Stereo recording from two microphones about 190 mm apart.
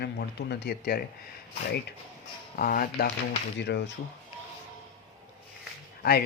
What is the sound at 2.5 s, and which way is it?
Speech, 50° left (ahead or behind).